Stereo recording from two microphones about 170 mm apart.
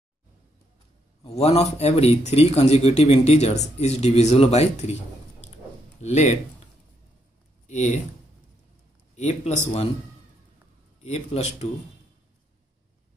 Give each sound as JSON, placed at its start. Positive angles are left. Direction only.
{"t": 1.2, "sound": "speech", "side_deg": 35}
{"t": 5.9, "sound": "speech", "side_deg": 45}
{"t": 7.6, "sound": "speech", "side_deg": 40}
{"t": 9.1, "sound": "a man's voice", "side_deg": 40}
{"t": 11.0, "sound": "speech", "side_deg": 40}